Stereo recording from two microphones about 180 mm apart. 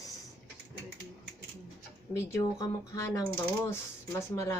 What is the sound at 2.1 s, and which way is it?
Speech, 15° left (ahead or behind).